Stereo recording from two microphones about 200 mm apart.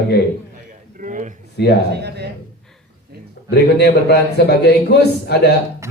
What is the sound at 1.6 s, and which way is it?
Speech, 60° left (ahead or behind).